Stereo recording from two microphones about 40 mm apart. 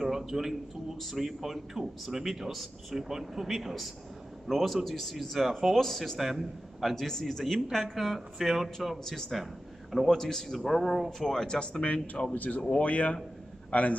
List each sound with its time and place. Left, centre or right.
0.3 s a man's voice: centre
6.1 s speech: centre
10.0 s speech: centre
11.8 s a man's voice: left